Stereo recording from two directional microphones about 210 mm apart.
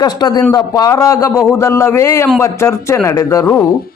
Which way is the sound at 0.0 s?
20° left (ahead or behind).